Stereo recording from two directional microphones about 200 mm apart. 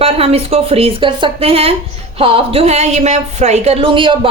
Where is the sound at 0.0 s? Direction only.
30° right (ahead or behind).